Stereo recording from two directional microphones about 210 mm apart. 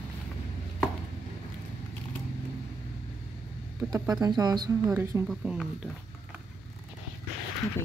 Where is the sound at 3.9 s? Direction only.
15° right (ahead or behind).